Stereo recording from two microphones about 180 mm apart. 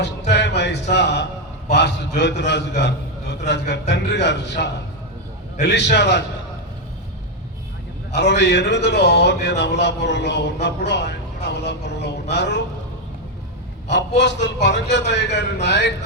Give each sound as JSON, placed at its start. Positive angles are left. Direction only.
{"t": 0.0, "sound": "a man's voice", "side_deg": 70}
{"t": 8.1, "sound": "a man's voice", "side_deg": 70}
{"t": 13.8, "sound": "a man's voice", "side_deg": 70}